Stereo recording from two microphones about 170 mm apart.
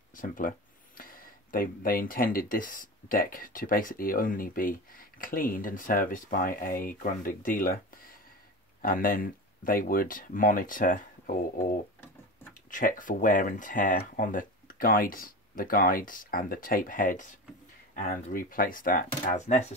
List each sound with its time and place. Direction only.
0.1 s speech: 55° left (ahead or behind)
12.6 s speech: 50° left (ahead or behind)